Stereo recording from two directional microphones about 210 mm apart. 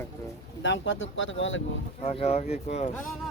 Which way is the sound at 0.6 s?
65° left (ahead or behind).